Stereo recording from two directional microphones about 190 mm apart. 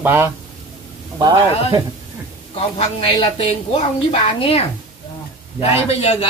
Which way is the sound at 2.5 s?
30° left (ahead or behind).